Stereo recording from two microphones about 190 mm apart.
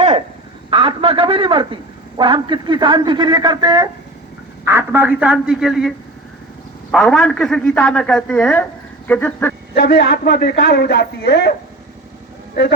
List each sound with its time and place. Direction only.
0.7 s a man's voice: 30° right (ahead or behind); by 5.9 s centre (ahead or behind)
6.9 s a man's voice: centre (ahead or behind)
9.7 s a man's voice: 55° left (ahead or behind)